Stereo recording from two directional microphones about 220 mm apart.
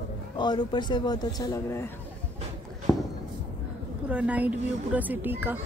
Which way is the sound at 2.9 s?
15° left (ahead or behind).